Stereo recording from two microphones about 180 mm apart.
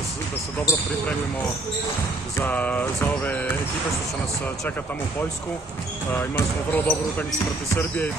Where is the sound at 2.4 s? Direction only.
10° left (ahead or behind).